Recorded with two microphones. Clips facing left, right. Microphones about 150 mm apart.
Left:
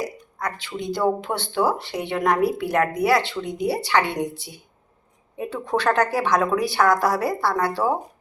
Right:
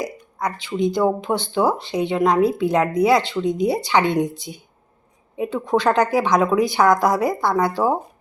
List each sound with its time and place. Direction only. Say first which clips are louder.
0.0 s speech: right 3 dB; 15° right (ahead or behind)